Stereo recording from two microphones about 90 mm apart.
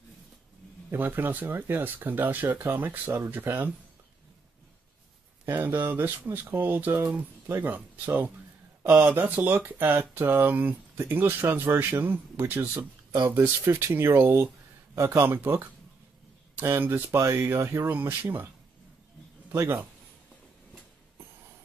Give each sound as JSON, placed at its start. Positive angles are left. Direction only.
{"t": 0.9, "sound": "speech", "side_deg": -25}
{"t": 5.4, "sound": "speech", "side_deg": -20}